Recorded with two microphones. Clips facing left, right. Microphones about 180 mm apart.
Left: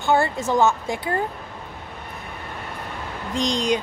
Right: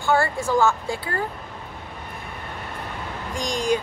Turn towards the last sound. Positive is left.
turn(degrees=20)  # may be behind; listen again after turning